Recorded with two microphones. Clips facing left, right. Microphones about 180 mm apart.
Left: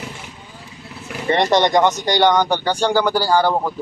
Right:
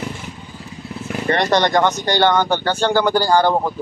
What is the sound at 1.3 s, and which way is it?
Speech, 20° left (ahead or behind).